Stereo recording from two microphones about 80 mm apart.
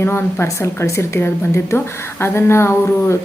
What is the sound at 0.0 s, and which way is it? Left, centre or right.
Speech, left.